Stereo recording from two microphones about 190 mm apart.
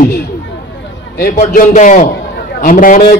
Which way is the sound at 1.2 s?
50° left (ahead or behind).